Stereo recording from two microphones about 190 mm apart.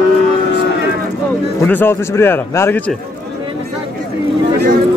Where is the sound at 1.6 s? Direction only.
10° left (ahead or behind).